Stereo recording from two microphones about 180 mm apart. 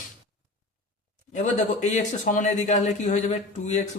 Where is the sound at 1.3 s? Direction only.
40° left (ahead or behind).